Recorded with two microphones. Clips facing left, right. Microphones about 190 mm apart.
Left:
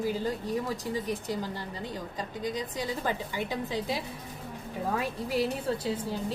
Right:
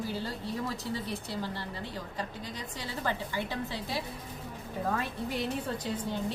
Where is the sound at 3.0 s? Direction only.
15° left (ahead or behind).